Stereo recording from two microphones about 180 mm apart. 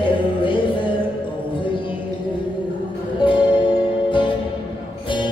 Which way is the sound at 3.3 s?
30° left (ahead or behind).